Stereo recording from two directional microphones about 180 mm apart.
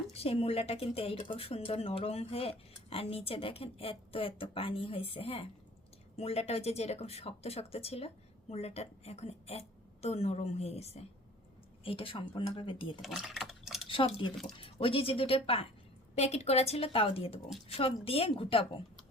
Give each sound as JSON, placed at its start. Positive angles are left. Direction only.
{"t": 0.1, "sound": "speech", "side_deg": 35}
{"t": 13.0, "sound": "typing", "side_deg": -5}
{"t": 13.8, "sound": "a sound", "side_deg": 30}
{"t": 14.6, "sound": "speech", "side_deg": 30}